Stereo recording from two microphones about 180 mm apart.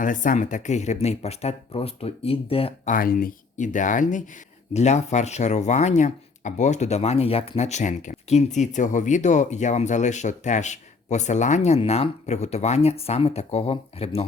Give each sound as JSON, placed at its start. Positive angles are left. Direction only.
{"t": 0.0, "sound": "speech", "side_deg": 45}
{"t": 2.9, "sound": "speech", "side_deg": 50}